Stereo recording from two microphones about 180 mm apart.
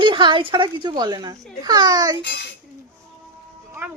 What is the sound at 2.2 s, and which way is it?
Speech, 70° left (ahead or behind).